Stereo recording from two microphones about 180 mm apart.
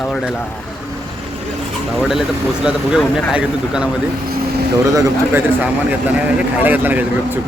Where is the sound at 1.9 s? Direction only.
Centre (ahead or behind).